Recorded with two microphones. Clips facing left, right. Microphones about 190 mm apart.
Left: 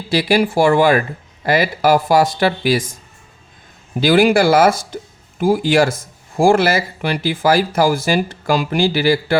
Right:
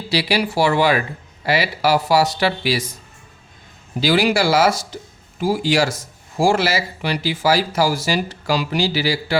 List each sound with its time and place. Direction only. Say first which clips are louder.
0.1 s speech: left 5 dB; 50° left (ahead or behind)
4.0 s speech: left 5 dB; 50° left (ahead or behind)